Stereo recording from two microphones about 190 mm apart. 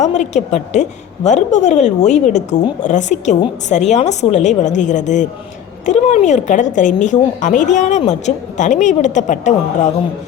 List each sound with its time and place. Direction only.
0.0 s a woman's voice: 35° left (ahead or behind)